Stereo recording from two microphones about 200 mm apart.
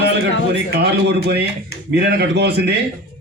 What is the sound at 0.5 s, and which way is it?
A man's voice, 55° right (ahead or behind).